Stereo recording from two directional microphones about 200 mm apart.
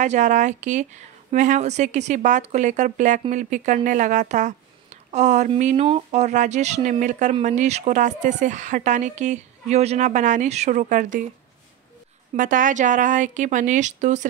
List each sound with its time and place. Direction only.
0.0 s speech: 35° right (ahead or behind)
12.4 s speech: 40° right (ahead or behind)